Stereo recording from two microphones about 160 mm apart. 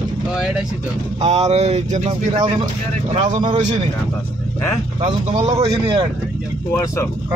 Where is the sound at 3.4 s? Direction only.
30° right (ahead or behind).